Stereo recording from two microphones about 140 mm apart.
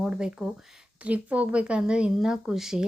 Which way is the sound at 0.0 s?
5° right (ahead or behind).